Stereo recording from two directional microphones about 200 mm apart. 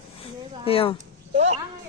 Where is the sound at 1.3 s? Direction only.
35° right (ahead or behind).